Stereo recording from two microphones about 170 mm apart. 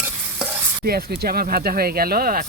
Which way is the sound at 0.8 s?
65° right (ahead or behind).